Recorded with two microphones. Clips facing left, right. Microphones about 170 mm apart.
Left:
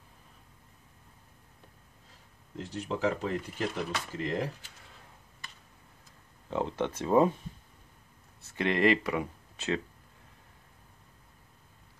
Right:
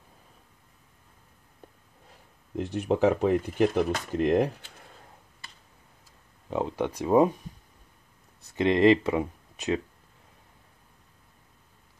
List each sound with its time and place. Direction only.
2.5 s speech: 60° right (ahead or behind)
6.5 s speech: 15° right (ahead or behind)
8.4 s speech: 15° right (ahead or behind)